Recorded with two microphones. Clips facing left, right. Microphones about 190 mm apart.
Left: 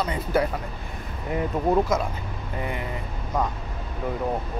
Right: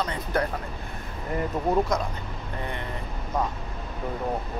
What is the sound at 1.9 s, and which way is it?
Speech, 5° left (ahead or behind).